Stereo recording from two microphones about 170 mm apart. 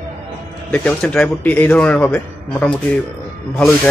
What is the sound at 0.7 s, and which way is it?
A man's voice, 5° left (ahead or behind).